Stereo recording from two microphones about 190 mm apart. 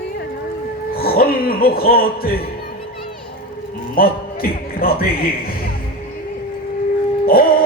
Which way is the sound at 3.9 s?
50° left (ahead or behind).